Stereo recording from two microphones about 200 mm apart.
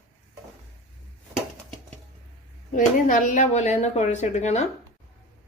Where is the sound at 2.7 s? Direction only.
40° left (ahead or behind).